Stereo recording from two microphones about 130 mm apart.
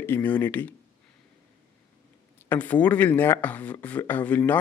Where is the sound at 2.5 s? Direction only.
10° left (ahead or behind).